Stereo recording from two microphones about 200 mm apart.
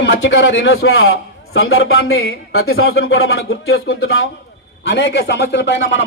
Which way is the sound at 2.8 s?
55° left (ahead or behind).